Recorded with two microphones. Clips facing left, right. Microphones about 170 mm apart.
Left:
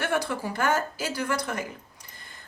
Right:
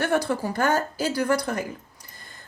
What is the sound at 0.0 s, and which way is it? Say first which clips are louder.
A woman's voice: right 4 dB; 40° right (ahead or behind).